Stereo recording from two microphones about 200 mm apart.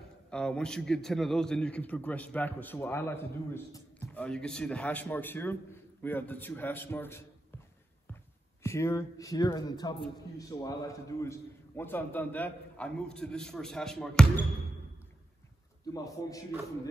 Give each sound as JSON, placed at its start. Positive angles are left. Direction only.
{"t": 0.3, "sound": "a man's voice", "side_deg": 5}
{"t": 8.6, "sound": "a man's voice", "side_deg": 15}
{"t": 15.9, "sound": "a man's voice", "side_deg": 15}